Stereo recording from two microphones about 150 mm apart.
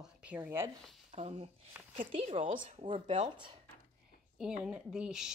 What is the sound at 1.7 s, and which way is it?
Speech, 10° right (ahead or behind).